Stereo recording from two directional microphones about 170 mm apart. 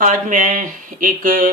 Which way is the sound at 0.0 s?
50° right (ahead or behind).